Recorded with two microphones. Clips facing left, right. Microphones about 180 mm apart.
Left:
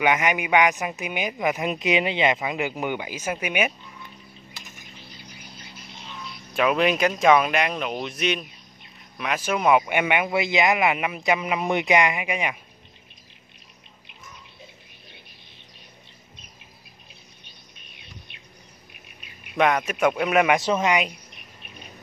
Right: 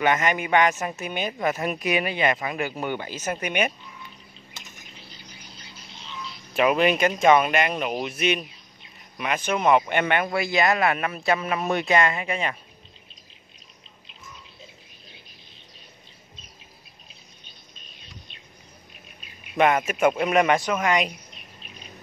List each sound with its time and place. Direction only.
0.0 s speech: 10° left (ahead or behind)
6.5 s speech: 5° right (ahead or behind); by 12.5 s 15° left (ahead or behind)
18.3 s chirp: 60° left (ahead or behind)
19.2 s a man's voice: 5° right (ahead or behind)
20.6 s speech: 25° left (ahead or behind)